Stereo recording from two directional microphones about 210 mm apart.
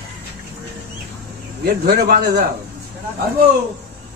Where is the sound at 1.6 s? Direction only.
45° right (ahead or behind).